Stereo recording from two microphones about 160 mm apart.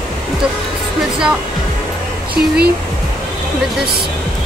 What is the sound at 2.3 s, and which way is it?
Speech, 80° right.